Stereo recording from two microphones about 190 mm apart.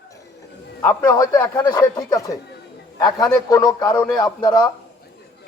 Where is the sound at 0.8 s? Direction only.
20° left (ahead or behind).